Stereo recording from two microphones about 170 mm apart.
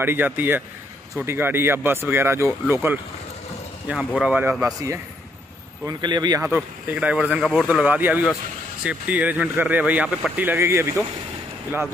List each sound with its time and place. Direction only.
0.0 s speech: 10° right (ahead or behind)